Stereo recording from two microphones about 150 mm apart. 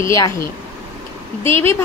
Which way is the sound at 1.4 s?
15° left (ahead or behind).